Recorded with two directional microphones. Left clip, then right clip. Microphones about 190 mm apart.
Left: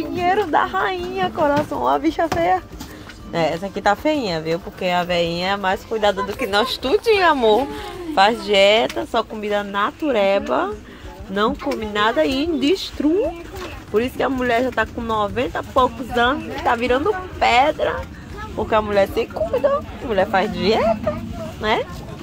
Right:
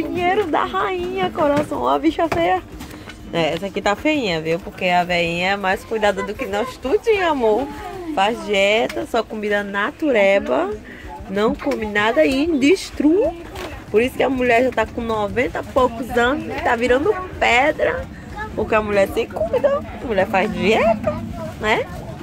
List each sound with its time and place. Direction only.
0.1 s speech: centre (ahead or behind)
9.1 s speech: 10° right (ahead or behind)
13.9 s speech: 5° right (ahead or behind)